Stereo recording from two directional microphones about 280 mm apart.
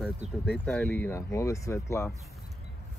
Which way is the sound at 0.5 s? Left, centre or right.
Centre.